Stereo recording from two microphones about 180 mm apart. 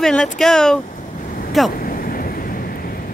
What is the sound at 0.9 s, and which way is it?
Vehicle, 50° left (ahead or behind).